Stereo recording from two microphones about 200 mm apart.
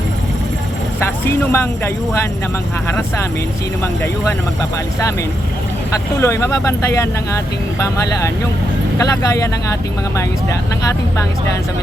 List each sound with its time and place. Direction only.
1.2 s speech: 10° left (ahead or behind)
6.1 s speech: 15° left (ahead or behind)